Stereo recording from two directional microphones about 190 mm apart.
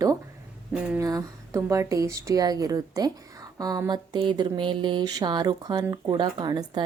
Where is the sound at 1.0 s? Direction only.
20° right (ahead or behind).